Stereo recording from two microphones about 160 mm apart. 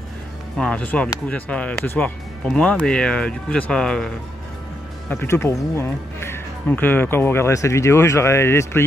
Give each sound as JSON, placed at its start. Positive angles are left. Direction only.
{"t": 0.6, "sound": "speech", "side_deg": 5}
{"t": 5.1, "sound": "speech", "side_deg": 15}